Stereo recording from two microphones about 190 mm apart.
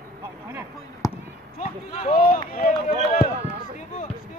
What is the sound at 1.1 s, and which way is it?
Basketball bounce, 30° left (ahead or behind).